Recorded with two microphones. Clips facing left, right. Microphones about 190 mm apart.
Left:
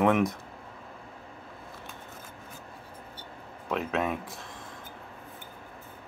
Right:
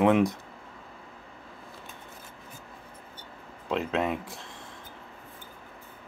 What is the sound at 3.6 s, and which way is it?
Speech, 30° right (ahead or behind).